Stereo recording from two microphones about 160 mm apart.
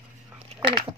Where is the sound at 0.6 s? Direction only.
30° right (ahead or behind).